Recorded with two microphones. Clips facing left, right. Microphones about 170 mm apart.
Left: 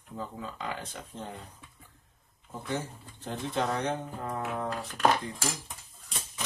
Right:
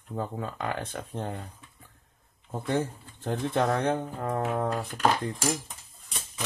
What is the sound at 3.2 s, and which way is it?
Speech, 55° right (ahead or behind).